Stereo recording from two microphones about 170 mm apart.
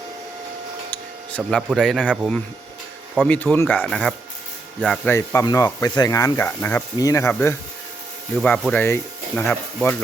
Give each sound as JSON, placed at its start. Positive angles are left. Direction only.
{"t": 1.4, "sound": "speech", "side_deg": 0}
{"t": 5.0, "sound": "speech", "side_deg": 15}
{"t": 8.4, "sound": "speech", "side_deg": 0}